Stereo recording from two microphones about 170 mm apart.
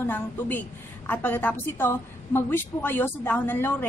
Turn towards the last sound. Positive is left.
turn(degrees=10)  # may be behind; listen again after turning